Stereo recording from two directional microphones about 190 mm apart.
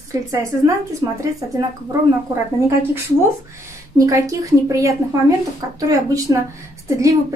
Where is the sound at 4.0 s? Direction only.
15° right (ahead or behind).